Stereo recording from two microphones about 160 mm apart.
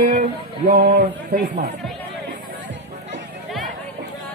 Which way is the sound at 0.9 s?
70° right (ahead or behind).